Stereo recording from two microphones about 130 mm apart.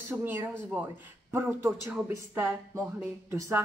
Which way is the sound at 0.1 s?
15° right (ahead or behind).